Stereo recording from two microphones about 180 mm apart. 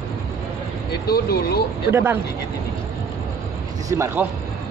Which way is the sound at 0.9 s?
60° left (ahead or behind).